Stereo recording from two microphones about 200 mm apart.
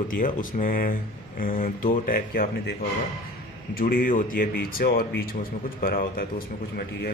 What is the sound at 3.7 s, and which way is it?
Speech, 45° left (ahead or behind).